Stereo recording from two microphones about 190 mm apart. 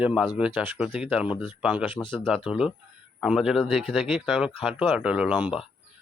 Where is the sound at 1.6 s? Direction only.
5° right (ahead or behind).